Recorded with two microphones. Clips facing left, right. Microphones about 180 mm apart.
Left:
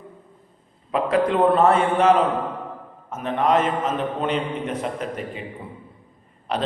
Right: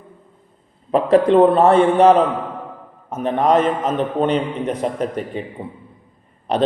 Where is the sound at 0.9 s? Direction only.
35° right (ahead or behind).